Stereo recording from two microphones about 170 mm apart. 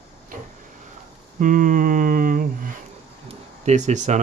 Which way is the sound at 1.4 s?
50° right (ahead or behind).